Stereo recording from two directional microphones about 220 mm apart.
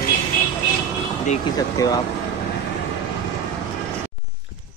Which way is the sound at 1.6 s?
15° left (ahead or behind).